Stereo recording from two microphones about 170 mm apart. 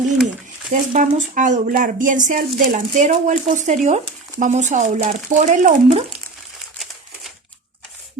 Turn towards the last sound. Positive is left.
turn(degrees=0)  # may be behind; listen again after turning